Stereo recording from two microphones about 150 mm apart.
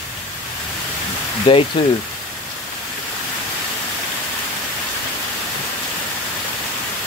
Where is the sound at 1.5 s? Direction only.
35° left (ahead or behind).